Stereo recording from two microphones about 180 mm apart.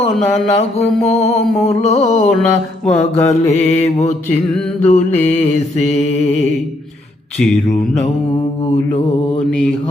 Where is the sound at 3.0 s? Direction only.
40° left (ahead or behind).